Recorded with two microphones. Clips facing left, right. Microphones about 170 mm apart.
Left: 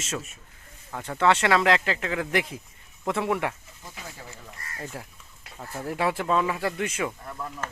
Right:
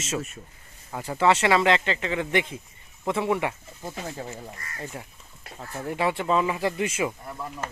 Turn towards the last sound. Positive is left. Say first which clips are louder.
# right 1 dB
turn(degrees=-15)  # may be behind; listen again after turning